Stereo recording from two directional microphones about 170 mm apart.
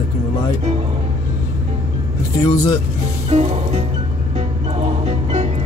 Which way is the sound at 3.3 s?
35° right (ahead or behind).